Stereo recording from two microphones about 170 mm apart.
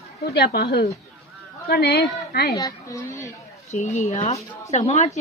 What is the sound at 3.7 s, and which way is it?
Speech, 40° left (ahead or behind).